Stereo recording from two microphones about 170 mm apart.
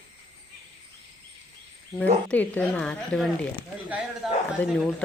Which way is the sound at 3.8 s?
10° right (ahead or behind).